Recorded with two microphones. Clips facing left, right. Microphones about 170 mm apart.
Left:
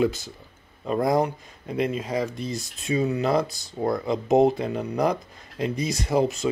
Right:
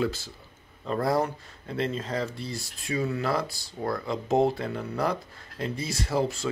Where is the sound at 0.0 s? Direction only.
20° left (ahead or behind).